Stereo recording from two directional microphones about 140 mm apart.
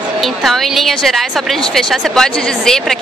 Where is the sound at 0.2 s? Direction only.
Centre (ahead or behind).